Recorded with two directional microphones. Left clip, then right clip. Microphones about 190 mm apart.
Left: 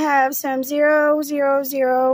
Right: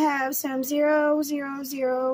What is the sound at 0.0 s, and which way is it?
A woman's voice, 35° left (ahead or behind).